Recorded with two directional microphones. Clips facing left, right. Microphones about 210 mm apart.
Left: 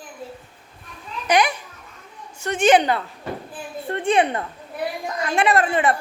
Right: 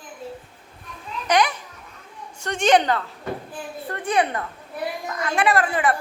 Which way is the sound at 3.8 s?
25° left (ahead or behind).